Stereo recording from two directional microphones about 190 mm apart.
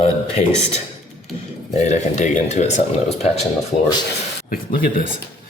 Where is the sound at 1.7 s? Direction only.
35° left (ahead or behind).